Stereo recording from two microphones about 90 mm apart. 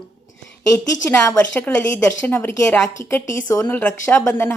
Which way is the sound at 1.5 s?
20° left (ahead or behind).